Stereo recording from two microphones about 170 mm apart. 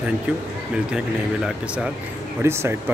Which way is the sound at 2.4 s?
15° right (ahead or behind).